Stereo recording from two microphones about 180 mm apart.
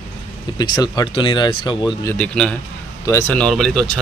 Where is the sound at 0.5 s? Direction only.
20° left (ahead or behind).